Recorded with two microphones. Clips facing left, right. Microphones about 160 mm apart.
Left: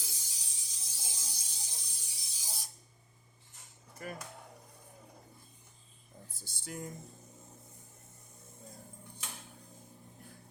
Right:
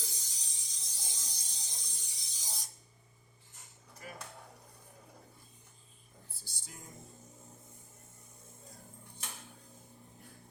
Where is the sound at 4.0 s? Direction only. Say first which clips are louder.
Left 6 dB; 55° left (ahead or behind).